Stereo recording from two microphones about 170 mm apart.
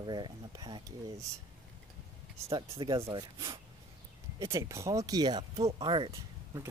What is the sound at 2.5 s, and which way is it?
Speech, 30° right (ahead or behind).